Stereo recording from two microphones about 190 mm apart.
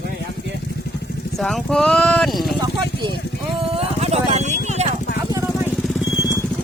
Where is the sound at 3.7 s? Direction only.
30° right (ahead or behind).